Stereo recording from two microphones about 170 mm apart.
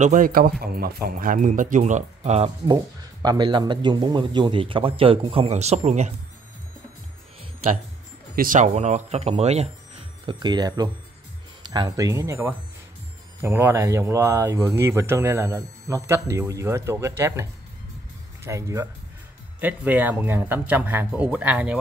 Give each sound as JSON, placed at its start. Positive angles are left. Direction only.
{"t": 0.0, "sound": "speech", "side_deg": -50}
{"t": 2.6, "sound": "speech", "side_deg": -25}
{"t": 8.4, "sound": "speech", "side_deg": -50}
{"t": 10.2, "sound": "speech", "side_deg": -25}